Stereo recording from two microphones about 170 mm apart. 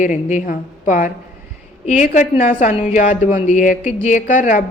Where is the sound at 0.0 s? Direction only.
45° left (ahead or behind).